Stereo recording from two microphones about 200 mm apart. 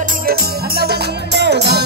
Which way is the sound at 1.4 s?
55° right (ahead or behind).